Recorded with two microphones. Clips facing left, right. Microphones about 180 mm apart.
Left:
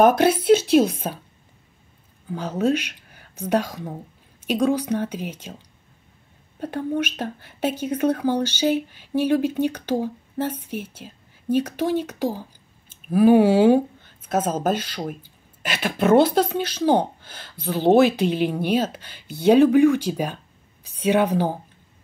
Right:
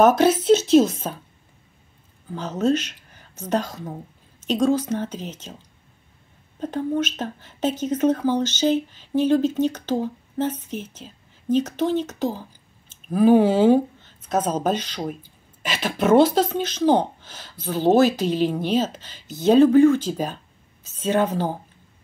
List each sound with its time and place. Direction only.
0.4 s speech: 10° left (ahead or behind)
2.3 s a woman's voice: 10° left (ahead or behind)
6.6 s speech: 10° left (ahead or behind)
16.4 s a woman's voice: 10° left (ahead or behind)